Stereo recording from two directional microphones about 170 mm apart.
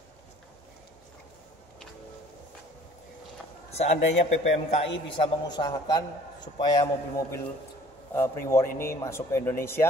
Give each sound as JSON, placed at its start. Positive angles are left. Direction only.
{"t": 3.7, "sound": "a man's voice", "side_deg": 40}
{"t": 5.1, "sound": "a man's voice", "side_deg": 30}